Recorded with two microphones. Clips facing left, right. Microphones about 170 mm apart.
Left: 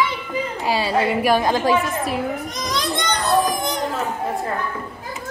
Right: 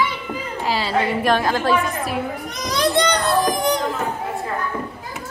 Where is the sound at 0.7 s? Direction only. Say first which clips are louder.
Left 1 dB; 10° left (ahead or behind).